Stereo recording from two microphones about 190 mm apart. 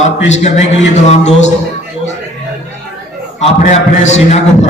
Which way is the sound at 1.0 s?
35° left (ahead or behind).